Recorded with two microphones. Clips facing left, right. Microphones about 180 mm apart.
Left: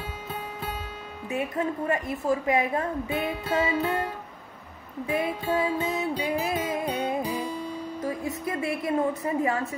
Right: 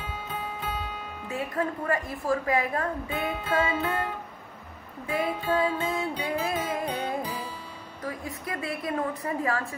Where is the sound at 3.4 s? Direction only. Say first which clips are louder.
Left 1 dB; 40° left (ahead or behind).